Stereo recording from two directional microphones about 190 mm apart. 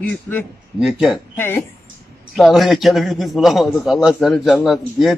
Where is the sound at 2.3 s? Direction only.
Centre (ahead or behind).